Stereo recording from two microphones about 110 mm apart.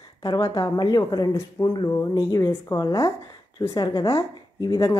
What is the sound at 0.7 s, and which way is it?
Speech, 35° left (ahead or behind).